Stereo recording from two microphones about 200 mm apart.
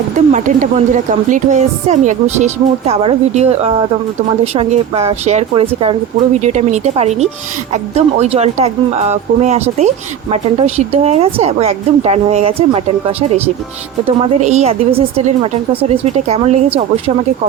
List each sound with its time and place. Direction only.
0.3 s speech: 35° right (ahead or behind)